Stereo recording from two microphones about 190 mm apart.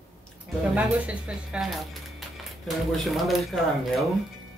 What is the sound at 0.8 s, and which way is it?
Speech, 5° right (ahead or behind).